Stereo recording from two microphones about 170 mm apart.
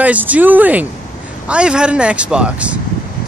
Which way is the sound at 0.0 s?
10° right (ahead or behind).